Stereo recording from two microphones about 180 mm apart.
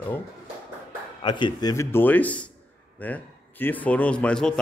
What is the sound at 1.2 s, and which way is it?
A man's voice, 25° left (ahead or behind).